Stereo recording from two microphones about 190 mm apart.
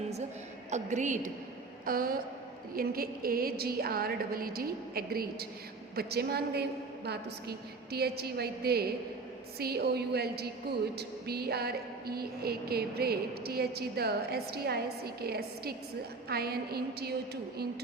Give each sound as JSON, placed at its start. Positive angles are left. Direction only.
{"t": 0.7, "sound": "a woman's voice", "side_deg": -40}